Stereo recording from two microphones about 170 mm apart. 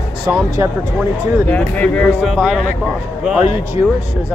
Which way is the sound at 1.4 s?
10° left (ahead or behind).